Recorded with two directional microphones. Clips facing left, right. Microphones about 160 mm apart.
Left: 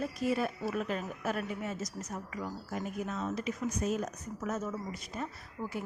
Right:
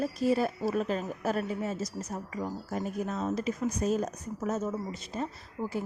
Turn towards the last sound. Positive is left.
turn(degrees=-30)  # may be behind; listen again after turning